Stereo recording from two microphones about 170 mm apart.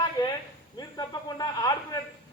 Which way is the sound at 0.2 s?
20° left (ahead or behind).